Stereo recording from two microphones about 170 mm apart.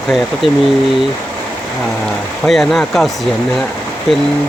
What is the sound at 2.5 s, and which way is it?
Speech, centre (ahead or behind).